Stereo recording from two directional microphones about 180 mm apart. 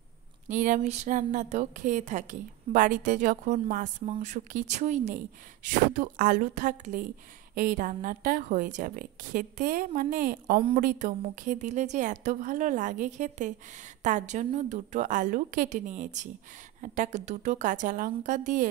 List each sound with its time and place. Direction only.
0.5 s a woman's voice: 45° right (ahead or behind)